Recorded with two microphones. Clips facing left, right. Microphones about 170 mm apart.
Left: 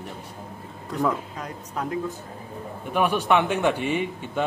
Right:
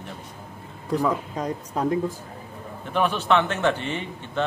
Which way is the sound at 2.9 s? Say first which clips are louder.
Even; 10° left (ahead or behind).